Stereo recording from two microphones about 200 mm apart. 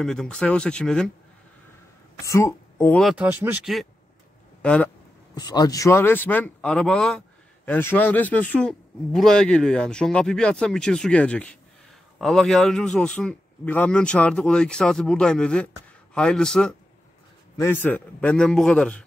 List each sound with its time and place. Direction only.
0.0 s speech: 5° left (ahead or behind)
2.2 s speech: 15° left (ahead or behind)
3.0 s speech: 5° right (ahead or behind)
4.6 s a sound: 5° left (ahead or behind)
5.3 s a man's voice: 20° left (ahead or behind)